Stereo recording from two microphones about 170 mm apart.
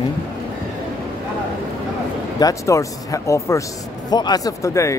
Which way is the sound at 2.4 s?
20° left (ahead or behind).